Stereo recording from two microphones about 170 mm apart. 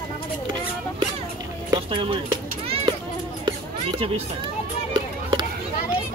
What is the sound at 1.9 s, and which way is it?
Children playing, 30° right (ahead or behind).